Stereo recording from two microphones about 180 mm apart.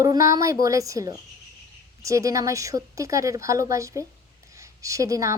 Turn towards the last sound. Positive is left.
turn(degrees=-20)  # may be behind; listen again after turning